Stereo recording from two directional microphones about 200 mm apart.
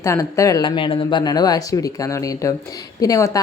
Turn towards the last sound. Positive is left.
turn(degrees=15)  # may be behind; listen again after turning